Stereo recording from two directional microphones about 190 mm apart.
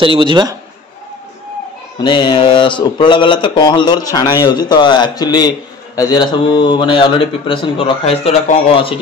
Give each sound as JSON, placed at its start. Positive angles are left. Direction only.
{"t": 0.0, "sound": "a man's voice", "side_deg": -25}
{"t": 2.0, "sound": "speech", "side_deg": 25}